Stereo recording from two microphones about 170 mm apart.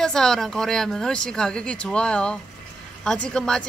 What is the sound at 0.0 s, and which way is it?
A woman's voice, 5° left (ahead or behind).